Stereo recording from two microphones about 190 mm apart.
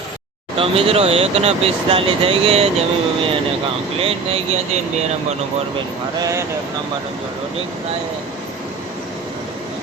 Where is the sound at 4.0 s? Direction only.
30° right (ahead or behind).